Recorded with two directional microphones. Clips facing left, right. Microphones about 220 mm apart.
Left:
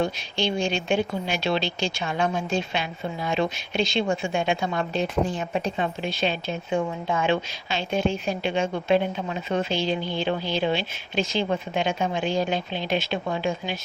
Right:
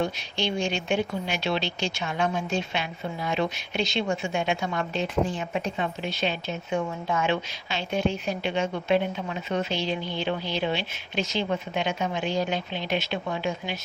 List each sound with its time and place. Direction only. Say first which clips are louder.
0.0 s a woman's voice: left 2 dB; 30° left (ahead or behind)